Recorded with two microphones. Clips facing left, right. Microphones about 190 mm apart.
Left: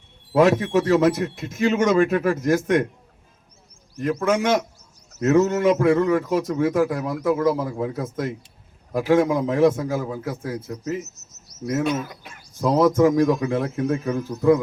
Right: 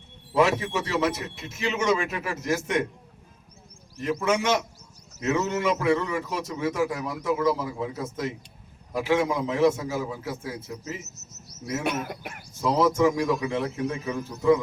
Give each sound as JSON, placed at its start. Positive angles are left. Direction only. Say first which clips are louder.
{"t": 0.3, "sound": "speech", "louder": "left 6 dB", "side_deg": 45}
{"t": 4.3, "sound": "a man's voice", "louder": "left 4 dB", "side_deg": 50}
{"t": 11.9, "sound": "speech", "louder": "left 4 dB", "side_deg": -65}
{"t": 12.6, "sound": "speech", "louder": "left 4 dB", "side_deg": 45}